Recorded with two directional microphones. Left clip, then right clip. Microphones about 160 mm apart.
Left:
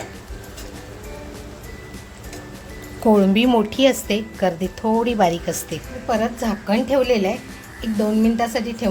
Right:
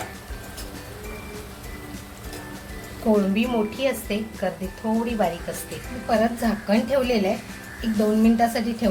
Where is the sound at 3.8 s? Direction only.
60° left (ahead or behind).